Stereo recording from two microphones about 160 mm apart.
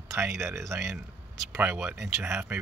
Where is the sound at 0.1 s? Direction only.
15° right (ahead or behind).